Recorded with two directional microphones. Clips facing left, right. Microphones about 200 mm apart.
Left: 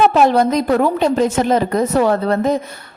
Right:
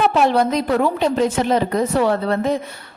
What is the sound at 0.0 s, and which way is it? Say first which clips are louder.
A woman's voice: left 3 dB; 45° left (ahead or behind).